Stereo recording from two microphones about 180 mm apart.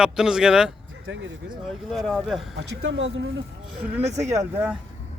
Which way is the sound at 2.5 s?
80° right.